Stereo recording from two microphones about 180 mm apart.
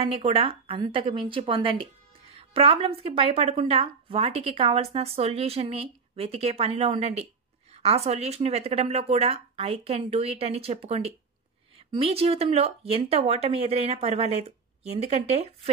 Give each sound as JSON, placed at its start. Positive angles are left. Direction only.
{"t": 0.0, "sound": "speech", "side_deg": -30}